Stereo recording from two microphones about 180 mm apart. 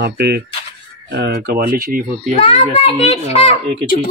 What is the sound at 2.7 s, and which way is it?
Speech, 35° left (ahead or behind).